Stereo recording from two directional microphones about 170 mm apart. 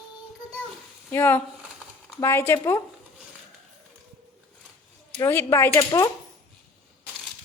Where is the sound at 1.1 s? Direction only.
10° left (ahead or behind).